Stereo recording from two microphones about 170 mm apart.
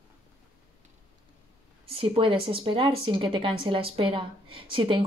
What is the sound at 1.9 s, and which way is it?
Speech, 30° right (ahead or behind).